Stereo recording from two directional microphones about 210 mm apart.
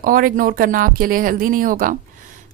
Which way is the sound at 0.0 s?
40° right (ahead or behind).